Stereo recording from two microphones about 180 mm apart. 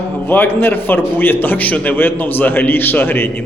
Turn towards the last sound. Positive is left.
turn(degrees=10)  # may be behind; listen again after turning